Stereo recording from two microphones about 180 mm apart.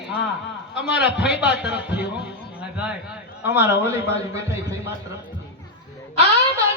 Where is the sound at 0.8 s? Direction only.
5° right (ahead or behind).